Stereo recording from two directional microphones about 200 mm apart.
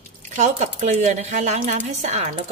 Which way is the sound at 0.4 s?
35° right (ahead or behind).